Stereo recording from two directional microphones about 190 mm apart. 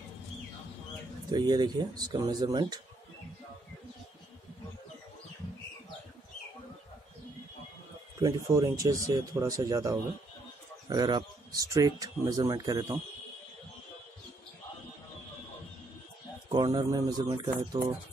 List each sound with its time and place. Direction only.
1.3 s speech: 20° right (ahead or behind)
8.2 s speech: 15° right (ahead or behind)
16.4 s a man's voice: 25° right (ahead or behind)